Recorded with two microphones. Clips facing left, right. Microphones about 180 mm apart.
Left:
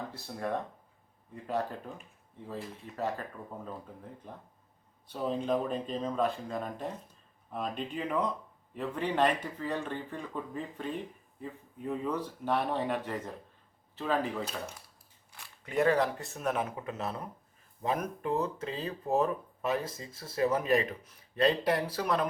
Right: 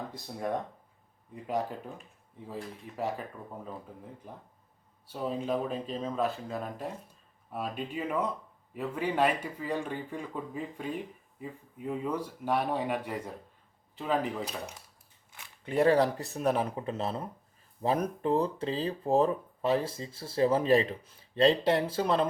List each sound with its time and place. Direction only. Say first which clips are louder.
0.1 s speech: right 1 dB; 15° right (ahead or behind)
2.9 s speech: even; 10° right (ahead or behind)
4.2 s speech: even; 10° right (ahead or behind)
15.6 s speech: right 3 dB; 30° right (ahead or behind)